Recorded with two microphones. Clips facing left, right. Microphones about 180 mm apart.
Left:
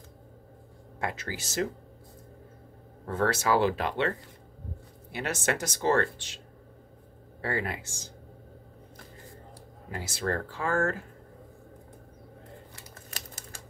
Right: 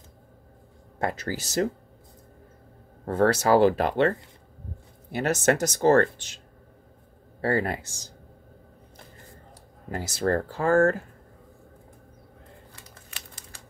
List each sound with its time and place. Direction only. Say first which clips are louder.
0.9 s speech: right 5 dB; 40° right (ahead or behind)
3.1 s speech: right 6 dB; 40° right (ahead or behind)
5.1 s speech: right 7 dB; 40° right (ahead or behind)
7.4 s speech: right 7 dB; 40° right (ahead or behind)
9.8 s speech: right 6 dB; 40° right (ahead or behind)
13.1 s typewriter: left 4 dB; 45° left (ahead or behind)